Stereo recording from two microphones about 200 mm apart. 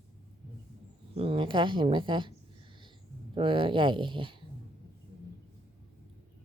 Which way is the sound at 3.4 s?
25° right (ahead or behind).